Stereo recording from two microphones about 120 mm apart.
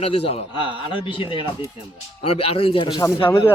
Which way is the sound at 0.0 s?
55° left (ahead or behind).